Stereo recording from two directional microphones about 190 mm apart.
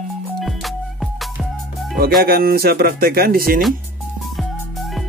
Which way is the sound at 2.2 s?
50° right (ahead or behind).